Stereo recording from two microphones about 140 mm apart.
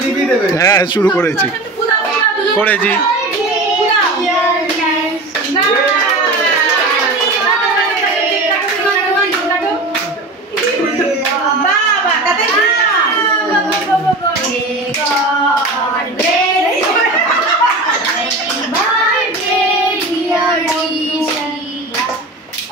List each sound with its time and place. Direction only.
0.6 s a man's voice: 25° left (ahead or behind)
2.6 s speech: 10° left (ahead or behind)